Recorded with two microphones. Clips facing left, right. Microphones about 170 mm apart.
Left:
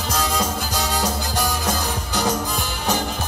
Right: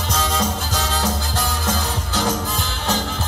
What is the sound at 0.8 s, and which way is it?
Music, 15° left (ahead or behind).